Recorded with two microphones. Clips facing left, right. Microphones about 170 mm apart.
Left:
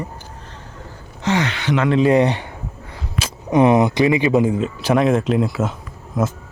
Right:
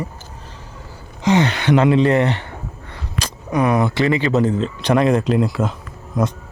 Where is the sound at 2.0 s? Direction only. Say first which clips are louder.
Left 1 dB; 15° left (ahead or behind).